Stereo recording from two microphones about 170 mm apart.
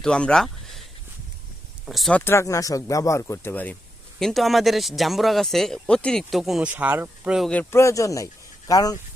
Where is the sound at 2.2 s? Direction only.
15° left (ahead or behind); by 7.4 s 10° right (ahead or behind).